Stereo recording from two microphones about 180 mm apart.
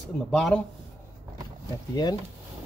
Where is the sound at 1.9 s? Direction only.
20° left (ahead or behind).